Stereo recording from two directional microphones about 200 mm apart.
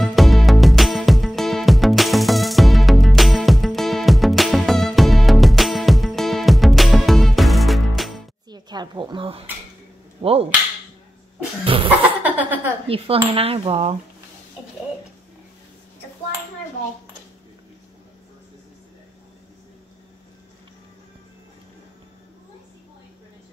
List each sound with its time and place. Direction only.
0.0 s music: centre (ahead or behind)
8.5 s a sound: 20° right (ahead or behind)
10.2 s dishes: 30° right (ahead or behind)
11.6 s a sound: 25° right (ahead or behind)
12.2 s laughter: 10° right (ahead or behind)
12.8 s dishes: 30° right (ahead or behind)